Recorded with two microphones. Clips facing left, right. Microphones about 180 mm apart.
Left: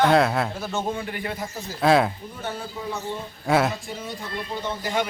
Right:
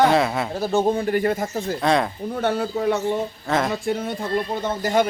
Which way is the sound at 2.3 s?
70° right (ahead or behind).